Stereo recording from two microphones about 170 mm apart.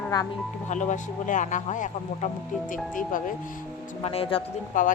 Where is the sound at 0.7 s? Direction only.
45° left (ahead or behind).